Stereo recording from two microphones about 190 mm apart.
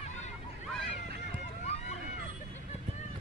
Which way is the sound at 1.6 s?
35° left (ahead or behind).